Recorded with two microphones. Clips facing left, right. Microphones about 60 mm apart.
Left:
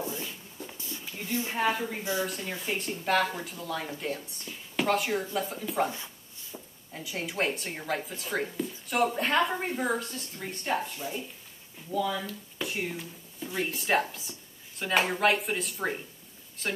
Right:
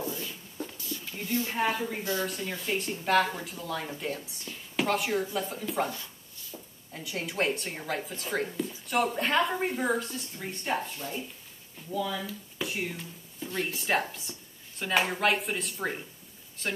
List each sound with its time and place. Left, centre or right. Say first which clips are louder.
0.0 s a sound: even; left
1.3 s a woman's voice: right 1 dB; left
1.6 s speech: left 3 dB; centre
6.9 s speech: even; centre